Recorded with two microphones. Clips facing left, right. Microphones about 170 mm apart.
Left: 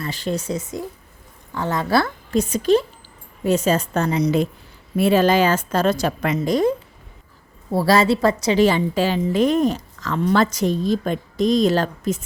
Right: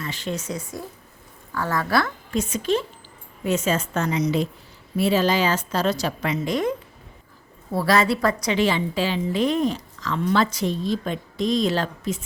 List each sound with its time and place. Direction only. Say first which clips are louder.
0.0 s a woman's voice: left 4 dB; 35° left (ahead or behind)
4.9 s a woman's voice: left 4 dB; 55° left (ahead or behind); by 8.5 s 25° left (ahead or behind)
8.5 s a woman's voice: left 5 dB; 45° left (ahead or behind)